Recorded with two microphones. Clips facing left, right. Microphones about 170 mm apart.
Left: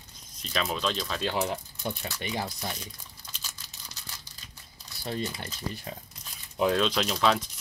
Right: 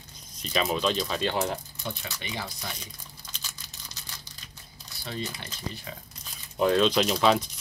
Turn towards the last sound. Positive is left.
turn(degrees=0)  # may be behind; listen again after turning